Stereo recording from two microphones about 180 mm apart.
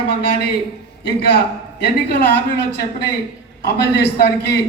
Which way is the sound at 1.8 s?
65° left (ahead or behind).